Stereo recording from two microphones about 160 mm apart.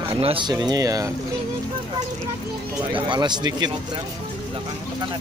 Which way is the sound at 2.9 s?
30° right (ahead or behind).